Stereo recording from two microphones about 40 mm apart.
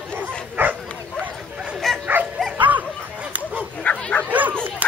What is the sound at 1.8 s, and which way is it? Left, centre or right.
Dog, centre.